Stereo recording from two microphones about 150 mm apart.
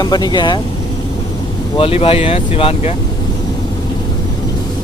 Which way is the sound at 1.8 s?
40° left (ahead or behind).